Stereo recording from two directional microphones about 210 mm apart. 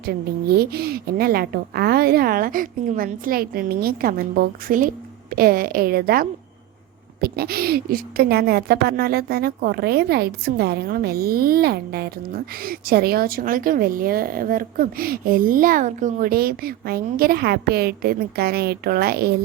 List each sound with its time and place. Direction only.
0.0 s speech: 45° right (ahead or behind)